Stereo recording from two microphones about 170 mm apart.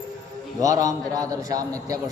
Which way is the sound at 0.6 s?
20° right (ahead or behind).